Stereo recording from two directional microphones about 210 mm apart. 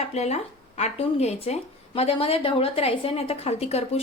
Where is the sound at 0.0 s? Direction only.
30° left (ahead or behind).